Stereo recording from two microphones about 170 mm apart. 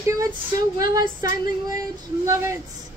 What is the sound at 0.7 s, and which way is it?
A woman's voice, 20° right (ahead or behind).